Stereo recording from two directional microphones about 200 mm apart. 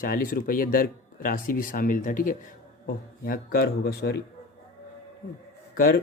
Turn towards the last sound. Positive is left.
turn(degrees=45)  # may be behind; listen again after turning